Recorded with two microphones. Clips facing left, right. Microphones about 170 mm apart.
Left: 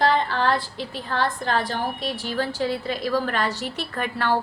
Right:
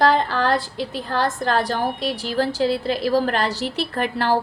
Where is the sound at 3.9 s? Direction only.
35° right (ahead or behind).